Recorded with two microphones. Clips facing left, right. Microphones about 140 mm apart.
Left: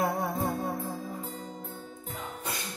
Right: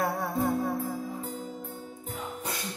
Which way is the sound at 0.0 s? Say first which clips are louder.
Right 1 dB; 20° left (ahead or behind).